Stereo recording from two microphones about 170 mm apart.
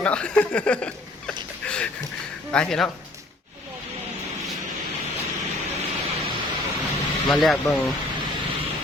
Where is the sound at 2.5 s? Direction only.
5° left (ahead or behind).